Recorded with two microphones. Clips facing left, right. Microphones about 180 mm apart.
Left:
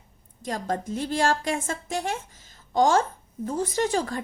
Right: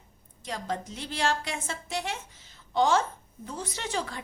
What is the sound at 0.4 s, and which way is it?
Speech, 45° left (ahead or behind).